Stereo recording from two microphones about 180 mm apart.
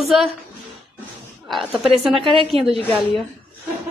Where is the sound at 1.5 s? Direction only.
Centre (ahead or behind).